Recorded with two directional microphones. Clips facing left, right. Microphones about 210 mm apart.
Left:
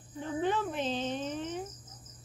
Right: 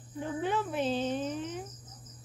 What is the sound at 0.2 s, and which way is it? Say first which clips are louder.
Speech: left 1 dB; 10° right (ahead or behind).